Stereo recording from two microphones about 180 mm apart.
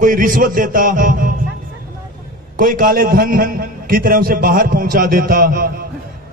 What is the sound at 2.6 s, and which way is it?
A man's voice, 50° right (ahead or behind).